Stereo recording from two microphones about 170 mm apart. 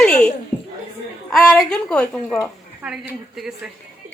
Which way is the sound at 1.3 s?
Centre (ahead or behind).